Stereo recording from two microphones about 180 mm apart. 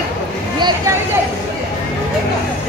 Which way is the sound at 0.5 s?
25° right (ahead or behind).